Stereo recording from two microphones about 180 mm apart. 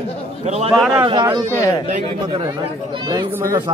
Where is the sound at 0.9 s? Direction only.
25° right (ahead or behind).